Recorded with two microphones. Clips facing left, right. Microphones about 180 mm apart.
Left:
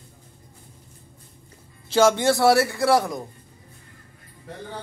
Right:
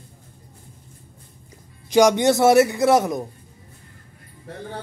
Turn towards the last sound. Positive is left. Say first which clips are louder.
# right 3 dB
turn(degrees=-20)  # may be behind; listen again after turning